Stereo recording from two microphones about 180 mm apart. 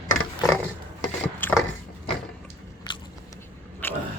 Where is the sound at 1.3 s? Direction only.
10° left (ahead or behind).